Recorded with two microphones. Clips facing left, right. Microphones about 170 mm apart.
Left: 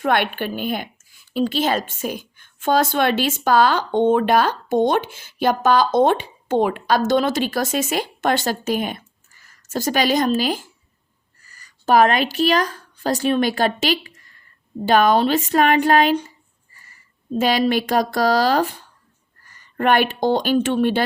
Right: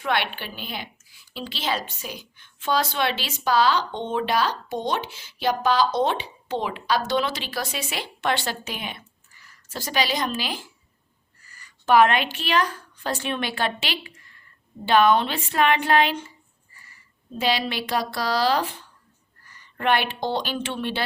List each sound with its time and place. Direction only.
0.0 s a woman's voice: 50° left (ahead or behind)
17.3 s a woman's voice: 45° left (ahead or behind)